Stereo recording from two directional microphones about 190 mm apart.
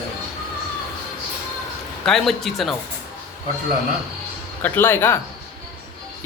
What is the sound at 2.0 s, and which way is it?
Speech, centre (ahead or behind).